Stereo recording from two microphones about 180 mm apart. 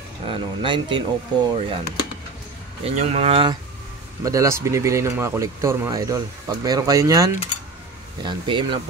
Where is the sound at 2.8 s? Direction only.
35° right (ahead or behind).